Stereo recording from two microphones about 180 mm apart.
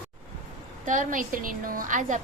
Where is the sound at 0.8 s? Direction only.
45° right (ahead or behind).